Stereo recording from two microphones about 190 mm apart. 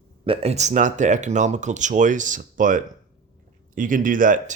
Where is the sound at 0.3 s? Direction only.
30° right (ahead or behind).